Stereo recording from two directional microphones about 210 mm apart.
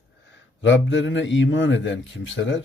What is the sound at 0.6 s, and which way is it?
A man's voice, 60° left (ahead or behind).